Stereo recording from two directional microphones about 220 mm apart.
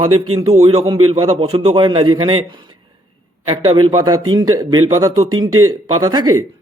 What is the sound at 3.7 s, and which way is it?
Speech, 20° right (ahead or behind).